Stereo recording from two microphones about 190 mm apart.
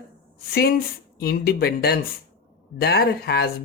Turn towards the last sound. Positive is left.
turn(degrees=55)  # may be behind; listen again after turning